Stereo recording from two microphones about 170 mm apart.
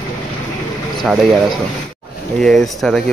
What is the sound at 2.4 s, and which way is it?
Speech, centre (ahead or behind).